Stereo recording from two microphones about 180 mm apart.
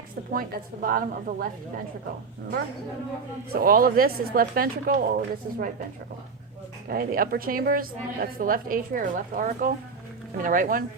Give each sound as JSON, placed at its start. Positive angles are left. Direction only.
{"t": 0.3, "sound": "a woman's voice", "side_deg": -50}
{"t": 3.5, "sound": "a woman's voice", "side_deg": -55}
{"t": 6.8, "sound": "a woman's voice", "side_deg": -55}